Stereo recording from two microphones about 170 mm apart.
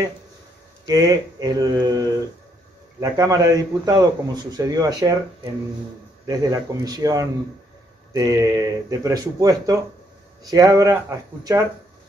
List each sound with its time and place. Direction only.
0.8 s a man's voice: 20° right (ahead or behind)